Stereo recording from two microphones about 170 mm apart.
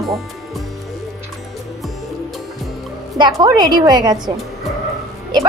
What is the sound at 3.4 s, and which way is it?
Speech, 25° right (ahead or behind).